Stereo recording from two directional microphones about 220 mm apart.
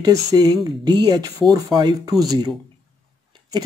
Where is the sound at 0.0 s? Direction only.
15° right (ahead or behind).